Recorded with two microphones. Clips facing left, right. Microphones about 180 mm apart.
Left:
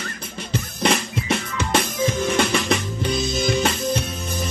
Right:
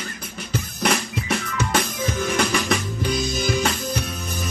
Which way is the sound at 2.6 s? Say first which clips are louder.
Left 1 dB; centre (ahead or behind).